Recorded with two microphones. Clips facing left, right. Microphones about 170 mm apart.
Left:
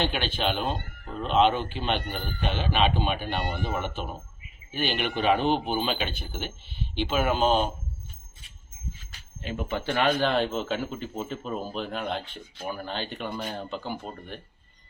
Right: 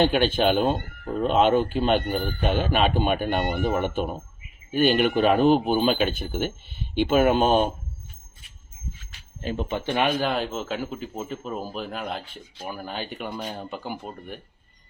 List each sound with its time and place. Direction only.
0.0 s speech: 45° right (ahead or behind)
9.4 s speech: 40° right (ahead or behind)
9.6 s speech: 20° right (ahead or behind)